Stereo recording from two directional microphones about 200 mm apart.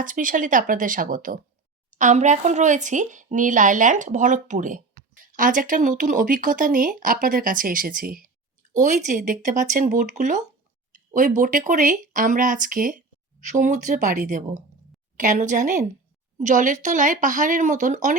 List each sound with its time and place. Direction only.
0.0 s speech: 40° right (ahead or behind)